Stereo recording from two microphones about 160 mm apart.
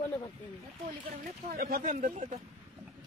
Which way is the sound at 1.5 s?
70° right (ahead or behind).